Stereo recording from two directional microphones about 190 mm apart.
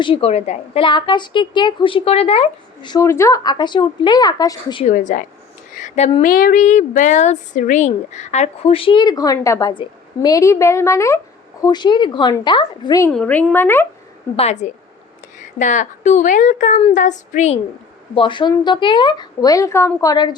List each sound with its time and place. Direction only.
0.0 s a woman's voice: 30° left (ahead or behind)
4.9 s a woman's voice: 40° left (ahead or behind); by 13.1 s 20° left (ahead or behind)
13.1 s speech: 5° left (ahead or behind)
14.3 s speech: 35° left (ahead or behind)
18.1 s a woman's voice: 25° left (ahead or behind)